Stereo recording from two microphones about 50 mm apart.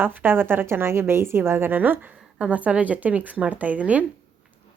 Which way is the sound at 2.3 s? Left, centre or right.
Right.